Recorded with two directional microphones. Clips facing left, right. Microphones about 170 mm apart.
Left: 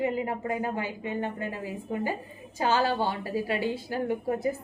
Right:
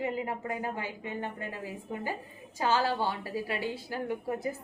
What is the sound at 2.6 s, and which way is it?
A woman's voice, 20° left (ahead or behind).